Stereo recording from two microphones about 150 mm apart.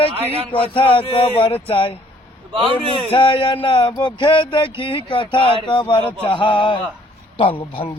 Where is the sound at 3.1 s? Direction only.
35° left (ahead or behind).